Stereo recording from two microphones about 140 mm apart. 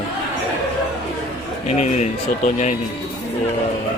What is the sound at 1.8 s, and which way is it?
Speech, 55° left (ahead or behind).